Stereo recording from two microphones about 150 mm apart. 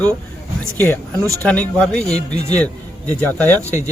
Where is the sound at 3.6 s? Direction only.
20° right (ahead or behind).